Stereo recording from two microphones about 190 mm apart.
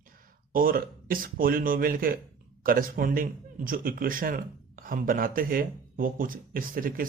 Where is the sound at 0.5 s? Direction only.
50° right (ahead or behind).